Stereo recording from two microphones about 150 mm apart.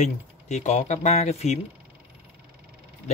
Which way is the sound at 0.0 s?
50° left (ahead or behind).